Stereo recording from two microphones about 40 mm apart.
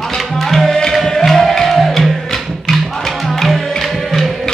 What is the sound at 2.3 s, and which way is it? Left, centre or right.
Music, centre.